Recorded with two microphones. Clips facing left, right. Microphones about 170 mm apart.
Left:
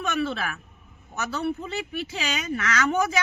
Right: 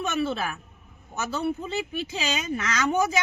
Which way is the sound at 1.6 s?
20° right (ahead or behind).